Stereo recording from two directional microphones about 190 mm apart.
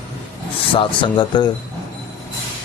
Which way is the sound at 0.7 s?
25° left (ahead or behind).